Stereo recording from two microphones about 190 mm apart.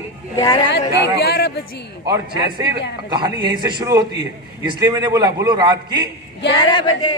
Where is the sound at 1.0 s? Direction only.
60° left (ahead or behind).